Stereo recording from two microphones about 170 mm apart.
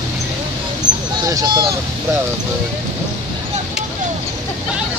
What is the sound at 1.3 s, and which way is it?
Speech, 20° right (ahead or behind).